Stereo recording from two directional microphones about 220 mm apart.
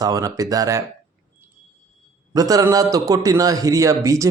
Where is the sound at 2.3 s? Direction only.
15° right (ahead or behind).